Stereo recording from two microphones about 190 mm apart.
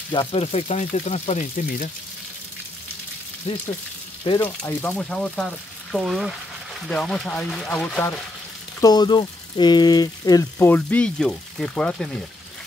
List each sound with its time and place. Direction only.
0.1 s speech: 30° left (ahead or behind)
3.5 s speech: 30° left (ahead or behind)
4.4 s speech: 10° left (ahead or behind)
8.8 s speech: 20° left (ahead or behind); by 12.2 s 5° left (ahead or behind)